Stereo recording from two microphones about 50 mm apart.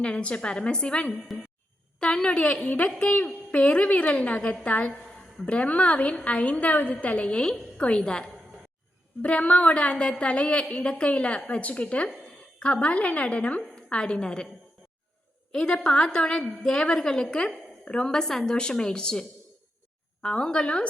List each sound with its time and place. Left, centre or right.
0.0 s a woman's voice: left
9.2 s a woman's voice: left
12.0 s a sound: centre
12.6 s a woman's voice: left
15.5 s a woman's voice: centre
20.2 s a woman's voice: centre